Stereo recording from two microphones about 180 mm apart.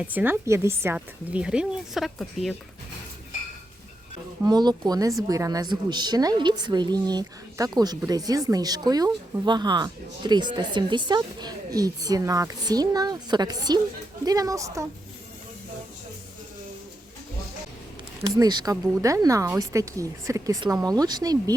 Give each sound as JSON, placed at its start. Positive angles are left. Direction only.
{"t": 0.0, "sound": "a woman's voice", "side_deg": -10}
{"t": 4.4, "sound": "speech", "side_deg": -20}
{"t": 18.3, "sound": "speech", "side_deg": -25}